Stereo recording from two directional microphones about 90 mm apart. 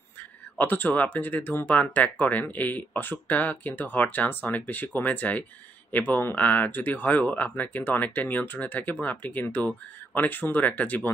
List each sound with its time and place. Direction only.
0.6 s speech: 20° left (ahead or behind)